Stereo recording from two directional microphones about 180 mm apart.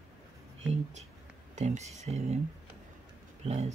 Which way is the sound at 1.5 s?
40° right (ahead or behind).